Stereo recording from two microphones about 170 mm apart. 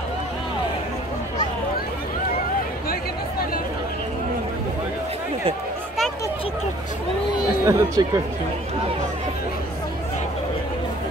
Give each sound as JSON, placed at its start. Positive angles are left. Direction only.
{"t": 7.6, "sound": "speech", "side_deg": -20}